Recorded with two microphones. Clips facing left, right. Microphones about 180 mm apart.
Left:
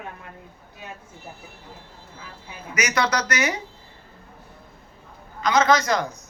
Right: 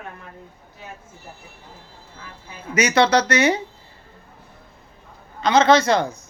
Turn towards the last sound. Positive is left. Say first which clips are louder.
# right 4 dB
turn(degrees=-30)  # may be behind; listen again after turning